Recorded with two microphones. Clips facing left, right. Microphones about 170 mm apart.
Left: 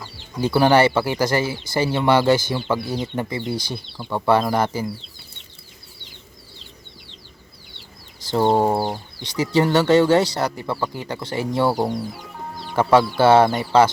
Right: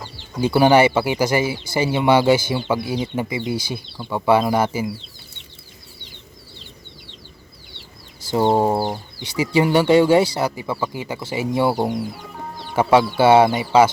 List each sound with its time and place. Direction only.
0.4 s speech: 15° right (ahead or behind)
8.2 s speech: 10° right (ahead or behind)